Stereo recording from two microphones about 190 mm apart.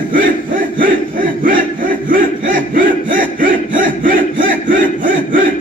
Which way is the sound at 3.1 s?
45° right (ahead or behind).